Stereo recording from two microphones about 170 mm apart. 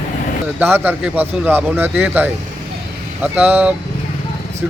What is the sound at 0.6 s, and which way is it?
Speech, 10° right (ahead or behind).